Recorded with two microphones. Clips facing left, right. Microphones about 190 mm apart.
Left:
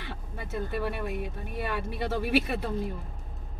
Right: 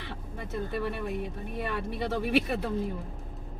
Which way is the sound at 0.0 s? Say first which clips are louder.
Even; 5° left (ahead or behind).